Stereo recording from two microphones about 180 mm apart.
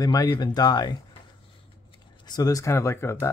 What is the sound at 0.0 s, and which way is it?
Speech, 15° left (ahead or behind).